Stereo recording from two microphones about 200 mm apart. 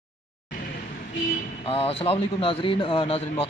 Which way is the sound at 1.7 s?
30° left (ahead or behind).